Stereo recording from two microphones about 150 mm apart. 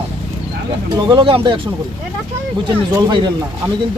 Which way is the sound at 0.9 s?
35° right (ahead or behind).